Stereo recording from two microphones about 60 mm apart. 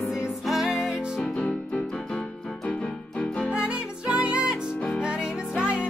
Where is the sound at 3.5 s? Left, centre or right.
Centre.